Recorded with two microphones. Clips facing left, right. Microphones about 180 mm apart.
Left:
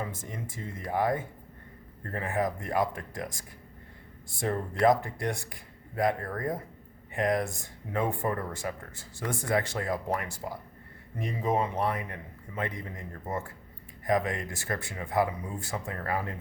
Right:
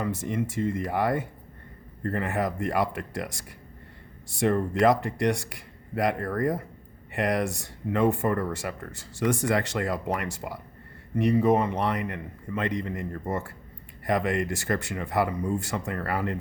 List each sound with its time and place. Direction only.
0.0 s speech: 75° right (ahead or behind)